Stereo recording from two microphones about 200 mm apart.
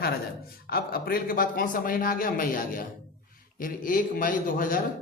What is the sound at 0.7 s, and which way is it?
A man's voice, 50° left (ahead or behind).